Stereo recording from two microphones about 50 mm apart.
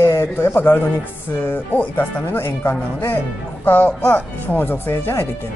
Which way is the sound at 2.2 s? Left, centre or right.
Left.